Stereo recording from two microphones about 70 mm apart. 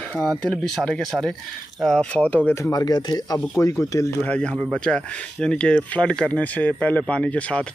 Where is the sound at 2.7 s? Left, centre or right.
Left.